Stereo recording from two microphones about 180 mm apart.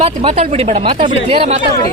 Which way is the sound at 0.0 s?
35° right (ahead or behind).